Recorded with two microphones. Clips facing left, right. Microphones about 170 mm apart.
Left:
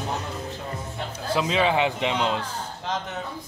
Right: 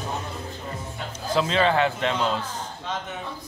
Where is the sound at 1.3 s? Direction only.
10° left (ahead or behind).